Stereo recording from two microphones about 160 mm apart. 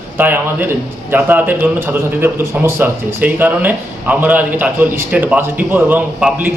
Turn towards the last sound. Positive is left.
turn(degrees=-10)  # may be behind; listen again after turning